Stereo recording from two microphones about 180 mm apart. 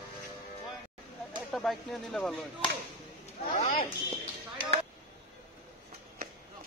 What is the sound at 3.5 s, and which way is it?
Speech, 45° left (ahead or behind).